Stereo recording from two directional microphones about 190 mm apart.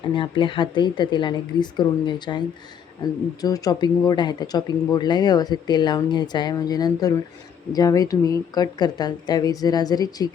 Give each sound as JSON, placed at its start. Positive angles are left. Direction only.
{"t": 0.1, "sound": "speech", "side_deg": 25}
{"t": 3.4, "sound": "speech", "side_deg": 20}